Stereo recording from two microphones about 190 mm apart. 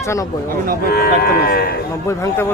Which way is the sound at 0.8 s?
55° left (ahead or behind).